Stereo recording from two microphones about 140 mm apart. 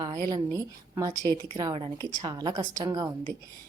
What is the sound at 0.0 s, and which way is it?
A woman's voice, 30° right (ahead or behind).